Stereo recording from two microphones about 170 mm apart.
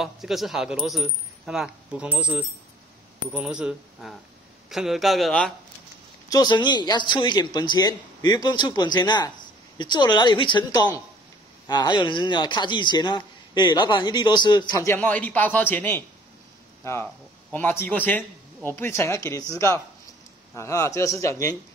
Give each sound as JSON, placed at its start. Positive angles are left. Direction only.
{"t": 0.0, "sound": "speech", "side_deg": 0}
{"t": 6.2, "sound": "a man's voice", "side_deg": 25}